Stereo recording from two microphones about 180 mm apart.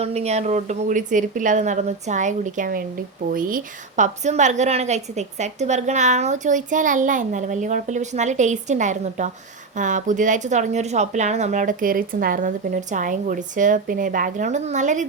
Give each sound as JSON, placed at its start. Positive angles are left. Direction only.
{"t": 0.0, "sound": "a woman's voice", "side_deg": -35}